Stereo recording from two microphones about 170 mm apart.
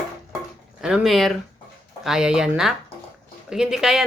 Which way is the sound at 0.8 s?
5° right (ahead or behind).